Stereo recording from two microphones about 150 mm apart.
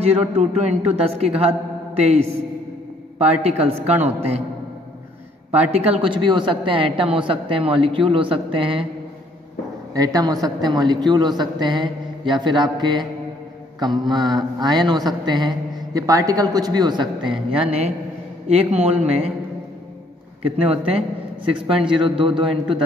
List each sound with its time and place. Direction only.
0.0 s speech: 45° right (ahead or behind)
3.2 s speech: 45° right (ahead or behind)
5.5 s a woman's voice: 45° right (ahead or behind)
9.9 s a woman's voice: 25° right (ahead or behind)
17.6 s a woman's voice: 40° right (ahead or behind)
20.4 s a woman's voice: 40° right (ahead or behind)